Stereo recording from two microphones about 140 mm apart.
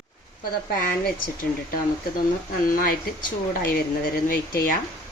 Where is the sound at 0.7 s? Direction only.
90° left.